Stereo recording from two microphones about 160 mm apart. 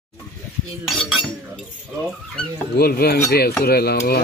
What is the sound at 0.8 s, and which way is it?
Speech, centre (ahead or behind).